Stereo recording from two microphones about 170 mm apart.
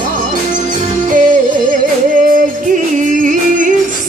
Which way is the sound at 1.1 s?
50° right (ahead or behind).